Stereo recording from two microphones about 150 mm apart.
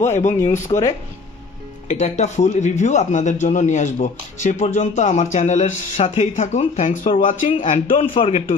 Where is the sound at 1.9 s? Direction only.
55° left (ahead or behind).